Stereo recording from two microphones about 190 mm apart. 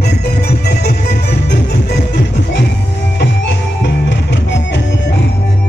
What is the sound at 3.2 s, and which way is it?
Music, 65° left (ahead or behind).